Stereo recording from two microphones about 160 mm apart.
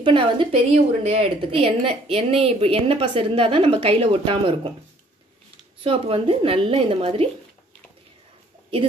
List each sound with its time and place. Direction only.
0.0 s a woman's voice: 30° right (ahead or behind)
5.9 s a woman's voice: 35° right (ahead or behind)